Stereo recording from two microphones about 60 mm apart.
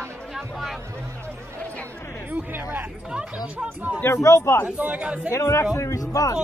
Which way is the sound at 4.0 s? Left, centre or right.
Left.